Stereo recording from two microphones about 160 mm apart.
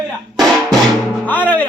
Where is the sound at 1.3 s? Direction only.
10° left (ahead or behind).